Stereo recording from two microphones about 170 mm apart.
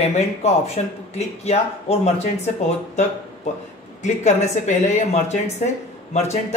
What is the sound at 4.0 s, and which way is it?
Speech, 45° left (ahead or behind).